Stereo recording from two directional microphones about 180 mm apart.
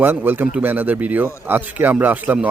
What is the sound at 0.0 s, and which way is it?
Speech, 10° right (ahead or behind).